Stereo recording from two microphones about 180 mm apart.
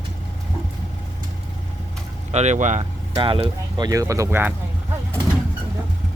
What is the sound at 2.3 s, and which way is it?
Speech, 40° right (ahead or behind).